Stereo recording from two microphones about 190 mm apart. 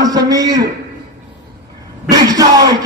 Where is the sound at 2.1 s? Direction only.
20° right (ahead or behind).